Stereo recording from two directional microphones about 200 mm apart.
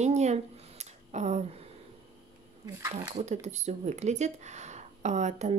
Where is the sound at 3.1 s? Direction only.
35° right (ahead or behind).